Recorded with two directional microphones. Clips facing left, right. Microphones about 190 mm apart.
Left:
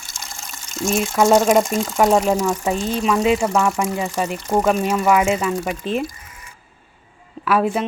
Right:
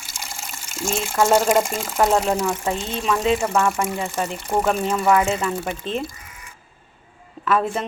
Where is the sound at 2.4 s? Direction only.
10° left (ahead or behind).